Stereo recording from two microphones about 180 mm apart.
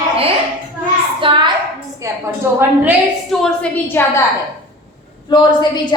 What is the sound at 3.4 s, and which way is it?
Speech, 5° left (ahead or behind).